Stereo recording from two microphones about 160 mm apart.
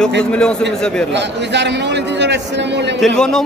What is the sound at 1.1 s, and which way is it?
A man's voice, 90° right.